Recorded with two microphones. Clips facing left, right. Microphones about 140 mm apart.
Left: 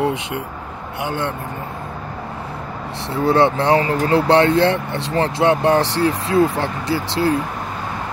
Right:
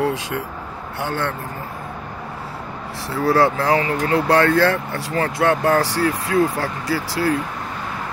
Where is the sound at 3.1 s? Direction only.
25° left (ahead or behind).